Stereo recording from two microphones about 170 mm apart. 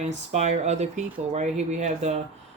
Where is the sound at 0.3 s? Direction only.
40° right (ahead or behind).